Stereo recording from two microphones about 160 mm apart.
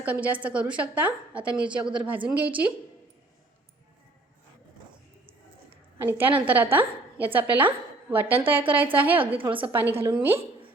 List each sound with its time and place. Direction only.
0.0 s a woman's voice: 10° right (ahead or behind)
6.0 s a woman's voice: 10° right (ahead or behind)
9.4 s a woman's voice: 35° right (ahead or behind)
10.0 s a woman's voice: 10° right (ahead or behind)